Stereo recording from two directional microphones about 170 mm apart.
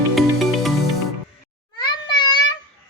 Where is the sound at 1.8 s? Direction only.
25° left (ahead or behind).